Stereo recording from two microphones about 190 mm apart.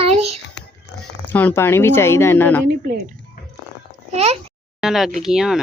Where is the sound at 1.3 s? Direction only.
10° left (ahead or behind).